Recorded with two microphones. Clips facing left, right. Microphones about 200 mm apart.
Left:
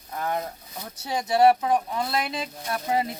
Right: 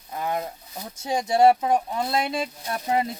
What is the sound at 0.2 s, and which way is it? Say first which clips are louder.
Speech: right 1 dB; 15° right (ahead or behind).